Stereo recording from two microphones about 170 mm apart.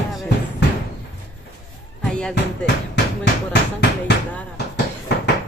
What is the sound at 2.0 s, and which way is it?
Music, 5° left (ahead or behind).